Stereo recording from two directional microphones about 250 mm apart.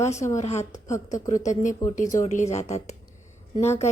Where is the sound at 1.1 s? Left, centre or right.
Left.